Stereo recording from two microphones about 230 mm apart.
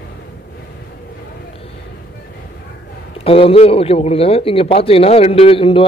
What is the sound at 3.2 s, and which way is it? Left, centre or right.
Speech, left.